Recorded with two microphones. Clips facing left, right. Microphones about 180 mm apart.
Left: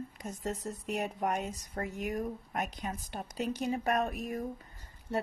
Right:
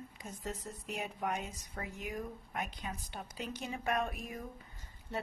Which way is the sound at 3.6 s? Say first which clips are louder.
Left 4 dB; 40° left (ahead or behind).